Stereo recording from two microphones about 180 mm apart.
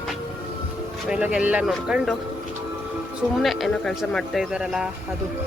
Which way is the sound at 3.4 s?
Centre (ahead or behind).